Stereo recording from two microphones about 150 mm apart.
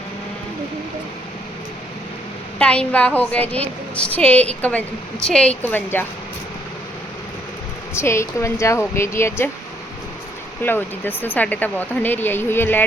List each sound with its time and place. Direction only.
2.6 s speech: 10° left (ahead or behind)
7.9 s speech: 20° left (ahead or behind)
10.6 s speech: 15° left (ahead or behind)